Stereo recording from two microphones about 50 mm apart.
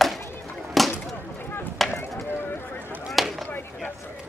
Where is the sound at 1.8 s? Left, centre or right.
Centre.